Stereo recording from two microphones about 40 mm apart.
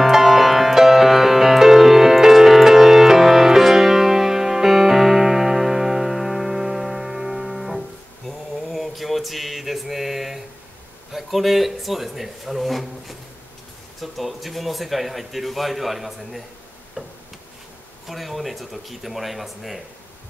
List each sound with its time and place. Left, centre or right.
0.0 s music: centre
8.3 s mantra: centre
11.1 s speech: centre
14.0 s speech: centre
17.0 s tick-tock: right
18.0 s speech: centre